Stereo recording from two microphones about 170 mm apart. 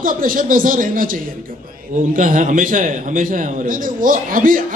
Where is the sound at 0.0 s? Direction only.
55° right (ahead or behind).